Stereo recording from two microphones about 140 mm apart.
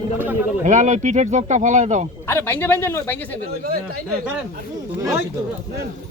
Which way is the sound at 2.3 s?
15° left (ahead or behind).